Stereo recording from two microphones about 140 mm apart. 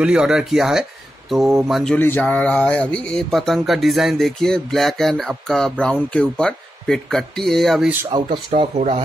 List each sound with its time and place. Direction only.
0.0 s speech: 5° right (ahead or behind)
2.0 s speech: 15° left (ahead or behind)
8.1 s speech: 35° right (ahead or behind)